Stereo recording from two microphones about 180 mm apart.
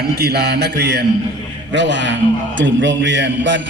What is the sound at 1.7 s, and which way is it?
A man's voice, 80° right.